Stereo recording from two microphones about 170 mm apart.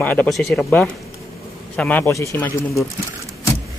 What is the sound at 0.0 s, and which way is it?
Speech, 10° left (ahead or behind).